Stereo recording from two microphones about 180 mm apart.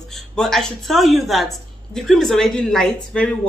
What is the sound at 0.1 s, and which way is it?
A woman's voice, centre (ahead or behind).